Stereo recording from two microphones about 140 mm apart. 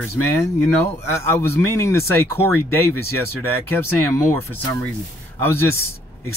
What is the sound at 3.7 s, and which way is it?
Speech, 20° left (ahead or behind).